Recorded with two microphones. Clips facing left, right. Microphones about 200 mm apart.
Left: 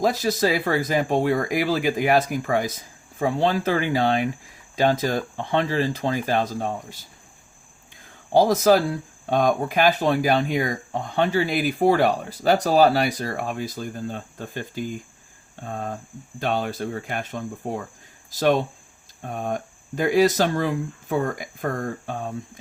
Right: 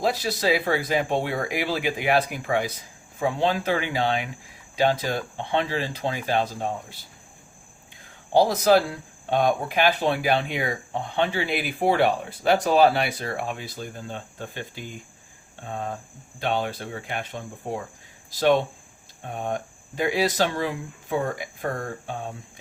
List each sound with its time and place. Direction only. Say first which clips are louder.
0.0 s speech: left 3 dB; 45° left (ahead or behind)
8.3 s speech: left 2 dB; 45° left (ahead or behind)
16.4 s speech: left 2 dB; 45° left (ahead or behind)